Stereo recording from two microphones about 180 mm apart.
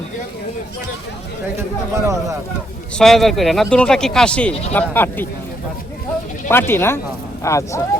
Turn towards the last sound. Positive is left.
turn(degrees=15)  # may be behind; listen again after turning